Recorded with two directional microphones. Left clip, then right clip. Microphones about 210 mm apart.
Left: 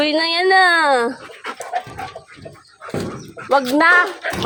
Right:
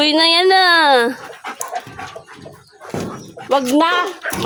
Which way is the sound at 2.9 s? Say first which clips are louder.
Even; 15° left (ahead or behind).